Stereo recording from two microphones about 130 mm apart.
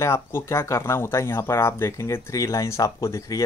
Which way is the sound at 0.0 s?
20° left (ahead or behind).